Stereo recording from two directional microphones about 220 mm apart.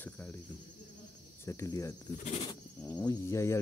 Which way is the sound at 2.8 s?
15° left (ahead or behind).